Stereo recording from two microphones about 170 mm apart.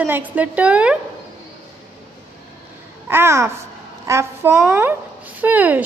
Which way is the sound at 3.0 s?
15° right (ahead or behind).